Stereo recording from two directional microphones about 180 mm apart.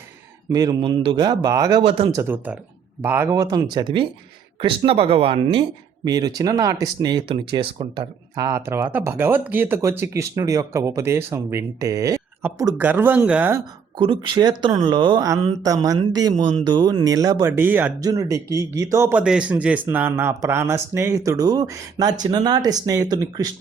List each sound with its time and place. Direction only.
0.5 s speech: 20° right (ahead or behind)
1.8 s speech: 30° right (ahead or behind)
6.1 s speech: 20° right (ahead or behind)
14.0 s speech: 25° right (ahead or behind)